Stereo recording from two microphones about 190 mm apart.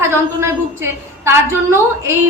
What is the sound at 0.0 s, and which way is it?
A woman's voice, 15° right (ahead or behind).